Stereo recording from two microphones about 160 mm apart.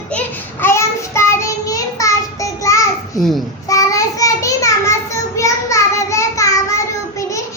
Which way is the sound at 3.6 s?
20° left (ahead or behind).